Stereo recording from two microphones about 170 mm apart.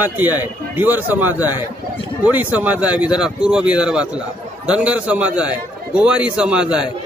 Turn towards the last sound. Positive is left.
turn(degrees=-5)  # may be behind; listen again after turning